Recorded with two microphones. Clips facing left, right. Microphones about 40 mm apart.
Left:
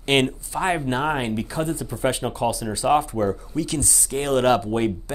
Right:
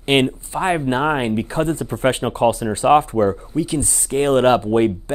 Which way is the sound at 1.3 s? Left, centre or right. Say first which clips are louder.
Right 5 dB; right.